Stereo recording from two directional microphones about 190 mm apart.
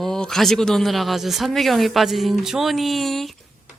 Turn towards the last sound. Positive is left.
turn(degrees=0)  # may be behind; listen again after turning